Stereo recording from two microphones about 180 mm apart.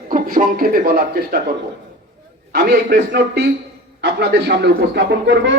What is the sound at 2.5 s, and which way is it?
A man's voice, 60° right (ahead or behind).